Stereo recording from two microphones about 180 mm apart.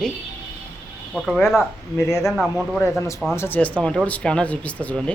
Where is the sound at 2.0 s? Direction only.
15° left (ahead or behind).